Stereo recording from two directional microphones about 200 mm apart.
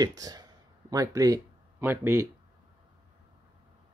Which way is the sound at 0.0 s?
20° right (ahead or behind).